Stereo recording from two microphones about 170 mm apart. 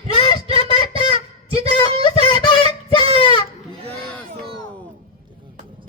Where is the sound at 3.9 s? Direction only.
5° left (ahead or behind).